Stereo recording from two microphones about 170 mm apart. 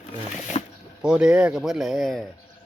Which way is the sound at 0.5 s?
35° left (ahead or behind).